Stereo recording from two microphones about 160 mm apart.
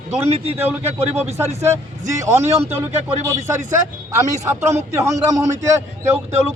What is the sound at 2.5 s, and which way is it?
Speech, 40° right (ahead or behind).